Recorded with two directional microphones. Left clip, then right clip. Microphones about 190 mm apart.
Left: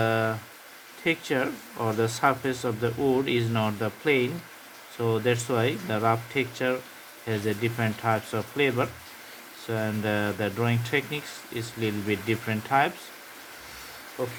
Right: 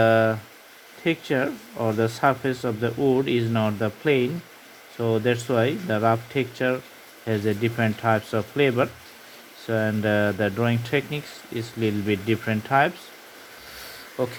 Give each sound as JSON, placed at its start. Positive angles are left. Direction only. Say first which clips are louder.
{"t": 0.0, "sound": "speech", "louder": "right 7 dB", "side_deg": -35}
{"t": 14.2, "sound": "speech", "louder": "right 5 dB", "side_deg": -40}